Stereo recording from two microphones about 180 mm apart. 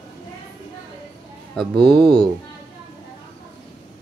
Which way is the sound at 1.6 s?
30° right (ahead or behind).